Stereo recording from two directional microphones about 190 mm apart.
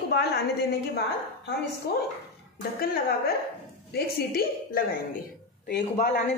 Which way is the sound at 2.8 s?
50° left (ahead or behind).